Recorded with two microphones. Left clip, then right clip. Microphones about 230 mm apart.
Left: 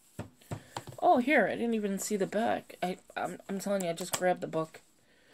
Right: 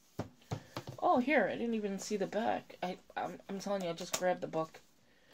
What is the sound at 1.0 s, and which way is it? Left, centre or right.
Speech, left.